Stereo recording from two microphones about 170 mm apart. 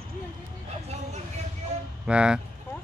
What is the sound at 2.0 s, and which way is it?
Speech, 5° right (ahead or behind).